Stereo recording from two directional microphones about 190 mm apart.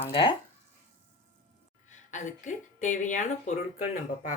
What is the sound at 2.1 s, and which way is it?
Speech, 40° left (ahead or behind).